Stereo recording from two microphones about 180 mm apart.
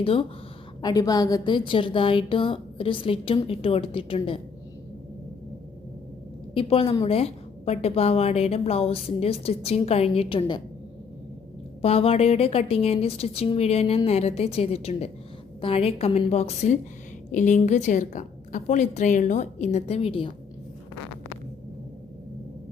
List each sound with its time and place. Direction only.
0.0 s a woman's voice: 30° left (ahead or behind)
0.8 s a woman's voice: 20° left (ahead or behind)
6.5 s a woman's voice: 30° left (ahead or behind)
11.8 s a woman's voice: 35° left (ahead or behind)